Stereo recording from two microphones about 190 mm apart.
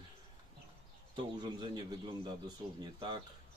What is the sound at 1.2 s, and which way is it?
Speech, 25° right (ahead or behind).